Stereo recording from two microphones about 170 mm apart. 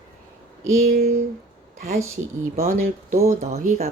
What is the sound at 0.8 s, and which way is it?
Speech, 50° right (ahead or behind).